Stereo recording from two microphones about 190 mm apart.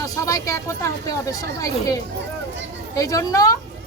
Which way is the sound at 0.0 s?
15° left (ahead or behind).